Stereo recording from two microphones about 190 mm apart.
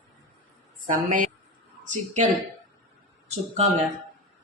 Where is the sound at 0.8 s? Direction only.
45° right (ahead or behind).